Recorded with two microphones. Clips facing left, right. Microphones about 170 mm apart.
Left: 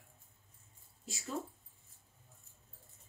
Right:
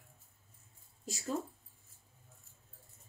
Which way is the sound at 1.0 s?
40° right (ahead or behind).